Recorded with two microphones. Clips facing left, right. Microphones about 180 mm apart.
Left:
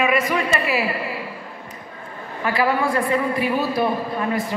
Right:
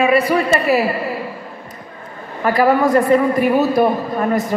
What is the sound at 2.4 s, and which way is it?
A woman's voice, 45° right (ahead or behind).